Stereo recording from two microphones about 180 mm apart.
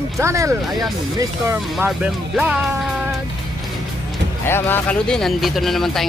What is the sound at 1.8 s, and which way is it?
Speech, 5° right (ahead or behind).